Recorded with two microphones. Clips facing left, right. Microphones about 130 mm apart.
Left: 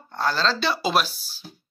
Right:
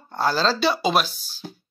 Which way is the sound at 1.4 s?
90° right.